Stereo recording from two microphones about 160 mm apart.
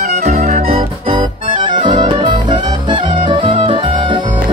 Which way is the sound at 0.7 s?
35° right (ahead or behind).